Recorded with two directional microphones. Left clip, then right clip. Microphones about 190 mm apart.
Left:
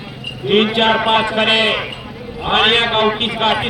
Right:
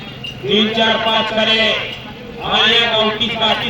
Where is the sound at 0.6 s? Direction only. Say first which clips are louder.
Even; 25° right (ahead or behind).